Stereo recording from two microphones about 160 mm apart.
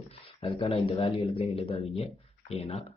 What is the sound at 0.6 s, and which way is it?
Speech, 40° left (ahead or behind).